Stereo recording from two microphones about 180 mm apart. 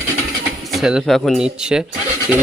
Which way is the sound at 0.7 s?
Centre (ahead or behind).